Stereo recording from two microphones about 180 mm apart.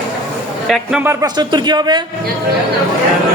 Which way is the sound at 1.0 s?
15° right (ahead or behind).